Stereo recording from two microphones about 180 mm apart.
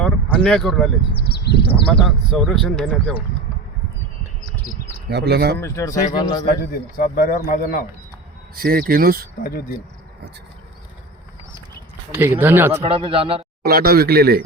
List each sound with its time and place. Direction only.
0.0 s a sound: 5° left (ahead or behind)
1.3 s speech: 65° left (ahead or behind)
1.7 s speech: centre (ahead or behind)
5.0 s speech: 65° right (ahead or behind)
5.5 s speech: 15° left (ahead or behind)
6.5 s a man's voice: 50° left (ahead or behind)
8.5 s speech: 55° right (ahead or behind)
9.4 s speech: 55° left (ahead or behind)
12.1 s speech: 10° right (ahead or behind)
12.8 s a man's voice: 30° right (ahead or behind)
13.6 s speech: 60° right (ahead or behind)